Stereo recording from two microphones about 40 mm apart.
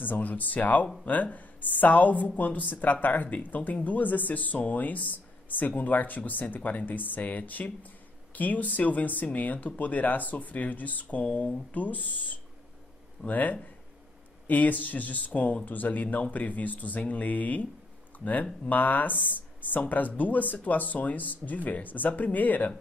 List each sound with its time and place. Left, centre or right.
0.0 s speech: left